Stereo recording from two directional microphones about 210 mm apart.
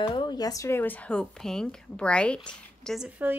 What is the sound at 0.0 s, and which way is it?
Speech, 20° left (ahead or behind).